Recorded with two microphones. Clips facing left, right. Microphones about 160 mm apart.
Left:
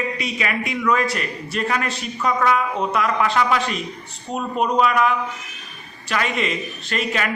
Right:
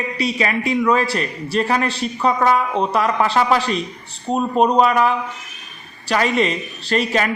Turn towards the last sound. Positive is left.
turn(degrees=-35)  # may be behind; listen again after turning